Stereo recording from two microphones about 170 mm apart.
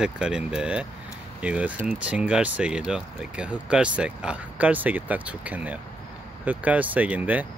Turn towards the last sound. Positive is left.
turn(degrees=-10)  # may be behind; listen again after turning